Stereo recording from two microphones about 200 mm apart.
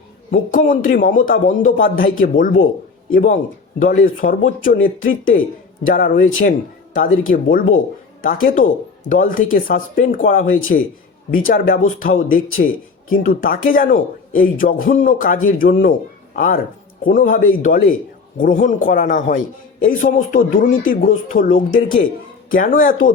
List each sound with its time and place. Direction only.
0.3 s a man's voice: 40° left (ahead or behind)
12.5 s speech: 90° left
13.1 s a man's voice: 45° left (ahead or behind)